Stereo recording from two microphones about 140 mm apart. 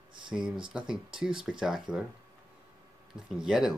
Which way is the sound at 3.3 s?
5° right (ahead or behind).